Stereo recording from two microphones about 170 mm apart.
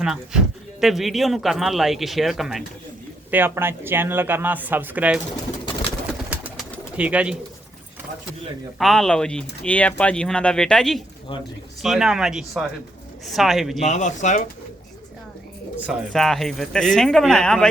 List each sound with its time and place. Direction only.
0.0 s speech: 5° right (ahead or behind)
3.3 s speech: 15° right (ahead or behind)
6.9 s speech: 10° right (ahead or behind)
8.8 s speech: centre (ahead or behind)
13.7 s speech: 45° left (ahead or behind)
15.9 s speech: centre (ahead or behind)